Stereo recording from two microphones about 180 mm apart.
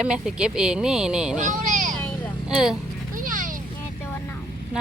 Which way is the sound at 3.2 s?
50° right (ahead or behind).